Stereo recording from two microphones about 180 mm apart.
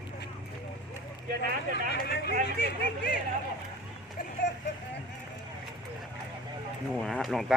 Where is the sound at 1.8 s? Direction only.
65° left (ahead or behind).